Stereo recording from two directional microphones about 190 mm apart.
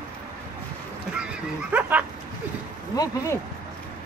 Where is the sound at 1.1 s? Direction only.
5° right (ahead or behind).